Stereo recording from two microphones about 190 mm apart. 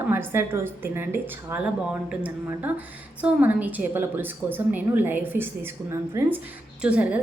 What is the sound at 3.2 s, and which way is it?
A woman's voice, 10° right (ahead or behind).